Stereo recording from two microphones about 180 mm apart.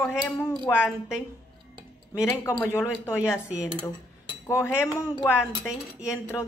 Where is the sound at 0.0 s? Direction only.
5° left (ahead or behind).